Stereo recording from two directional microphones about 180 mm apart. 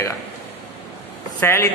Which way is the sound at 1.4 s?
15° left (ahead or behind).